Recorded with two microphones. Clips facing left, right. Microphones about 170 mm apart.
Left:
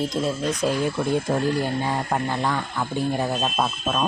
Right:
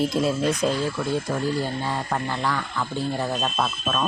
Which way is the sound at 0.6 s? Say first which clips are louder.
Left 1 dB; 10° left (ahead or behind).